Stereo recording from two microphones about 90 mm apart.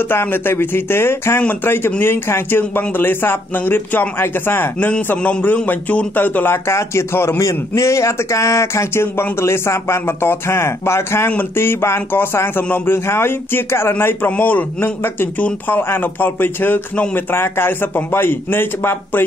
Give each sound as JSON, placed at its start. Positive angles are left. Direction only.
{"t": 0.1, "sound": "speech", "side_deg": 25}